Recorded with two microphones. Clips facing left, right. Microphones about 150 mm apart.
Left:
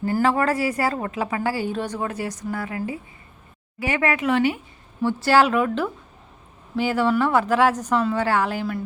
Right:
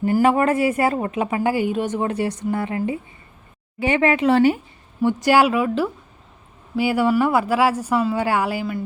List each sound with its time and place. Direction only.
0.0 s speech: 15° right (ahead or behind); by 4.6 s 35° right (ahead or behind)
5.0 s a woman's voice: 15° right (ahead or behind)